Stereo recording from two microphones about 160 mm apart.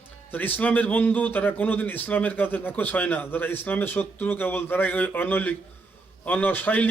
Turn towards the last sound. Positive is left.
turn(degrees=10)  # may be behind; listen again after turning